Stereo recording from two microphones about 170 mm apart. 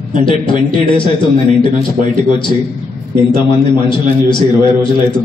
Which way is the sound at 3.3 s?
30° left (ahead or behind).